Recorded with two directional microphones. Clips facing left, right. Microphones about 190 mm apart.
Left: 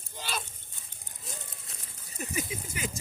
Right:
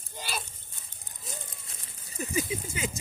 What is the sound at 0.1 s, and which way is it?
Dog, 10° right (ahead or behind).